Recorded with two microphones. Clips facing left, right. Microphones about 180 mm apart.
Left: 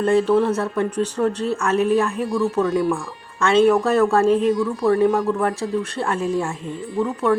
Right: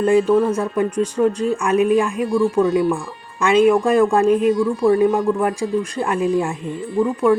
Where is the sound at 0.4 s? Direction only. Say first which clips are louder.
Right 2 dB; 10° right (ahead or behind).